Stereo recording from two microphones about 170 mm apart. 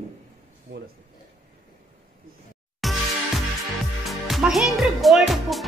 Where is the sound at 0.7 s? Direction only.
90° right.